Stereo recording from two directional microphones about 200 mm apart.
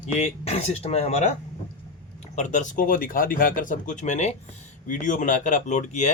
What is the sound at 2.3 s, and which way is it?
Speech, 35° left (ahead or behind).